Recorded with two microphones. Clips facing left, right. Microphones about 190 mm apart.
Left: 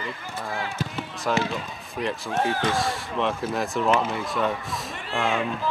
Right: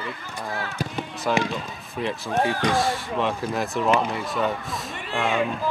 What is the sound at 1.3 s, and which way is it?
Speech, centre (ahead or behind).